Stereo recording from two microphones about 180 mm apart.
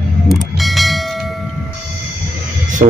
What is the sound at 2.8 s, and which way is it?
Speech, 45° right (ahead or behind).